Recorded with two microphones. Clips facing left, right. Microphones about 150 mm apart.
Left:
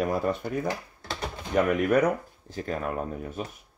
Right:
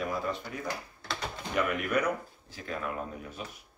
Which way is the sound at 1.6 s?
45° left (ahead or behind).